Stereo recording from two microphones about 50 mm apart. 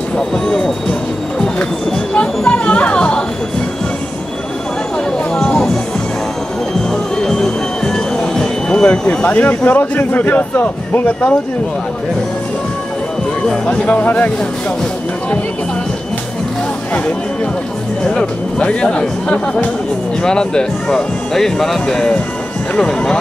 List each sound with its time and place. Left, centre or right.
0.5 s speech: centre
2.1 s music: centre
5.3 s a sound: centre
6.9 s music: centre
9.3 s a man's voice: left
11.1 s speech: left
13.7 s speech: left
18.0 s speech: centre